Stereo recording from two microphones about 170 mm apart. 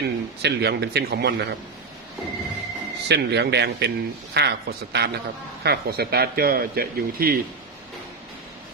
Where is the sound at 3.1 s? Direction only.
80° right; by 7.4 s 60° right (ahead or behind).